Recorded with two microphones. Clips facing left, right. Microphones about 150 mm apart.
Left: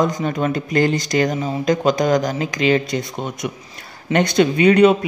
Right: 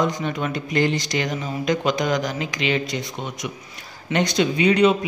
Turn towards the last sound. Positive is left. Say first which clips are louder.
# left 5 dB
turn(degrees=55)  # may be behind; listen again after turning